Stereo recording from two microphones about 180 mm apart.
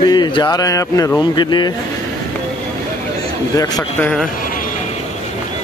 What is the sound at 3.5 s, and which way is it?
Speech, 20° left (ahead or behind).